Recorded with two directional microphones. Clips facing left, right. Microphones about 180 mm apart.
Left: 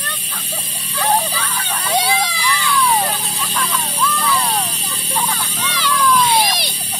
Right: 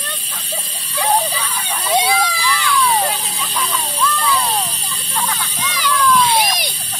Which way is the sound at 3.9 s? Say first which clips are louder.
Right 1 dB; 5° left (ahead or behind).